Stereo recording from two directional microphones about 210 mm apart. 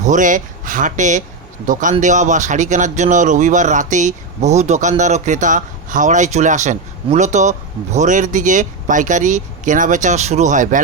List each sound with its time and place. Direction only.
0.0 s speech: 35° right (ahead or behind)